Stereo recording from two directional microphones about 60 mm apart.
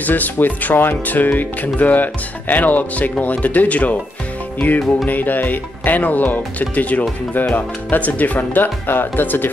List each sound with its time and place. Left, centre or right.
0.0 s speech: left